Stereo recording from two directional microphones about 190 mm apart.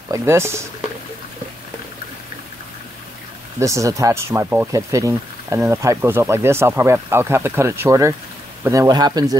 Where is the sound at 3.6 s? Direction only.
15° right (ahead or behind).